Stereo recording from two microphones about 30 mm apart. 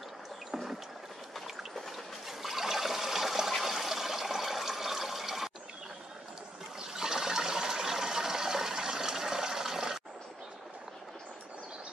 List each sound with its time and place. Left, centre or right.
0.5 s boat: centre
1.8 s toilet flush: centre
6.8 s water: centre